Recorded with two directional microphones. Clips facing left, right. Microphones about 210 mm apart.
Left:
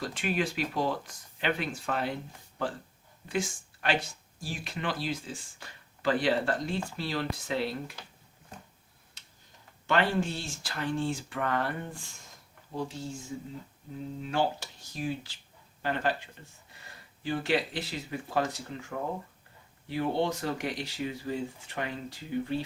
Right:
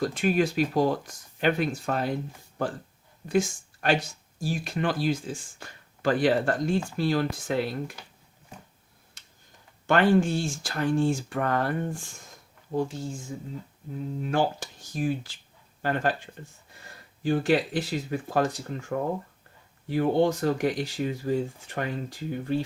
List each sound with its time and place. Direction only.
0.0 s speech: 45° right (ahead or behind)
3.2 s speech: 45° right (ahead or behind)
9.2 s tick-tock: 50° right (ahead or behind)
9.8 s speech: 50° right (ahead or behind)
14.2 s speech: 50° right (ahead or behind)